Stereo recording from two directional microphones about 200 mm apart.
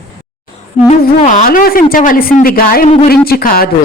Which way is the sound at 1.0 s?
40° left (ahead or behind).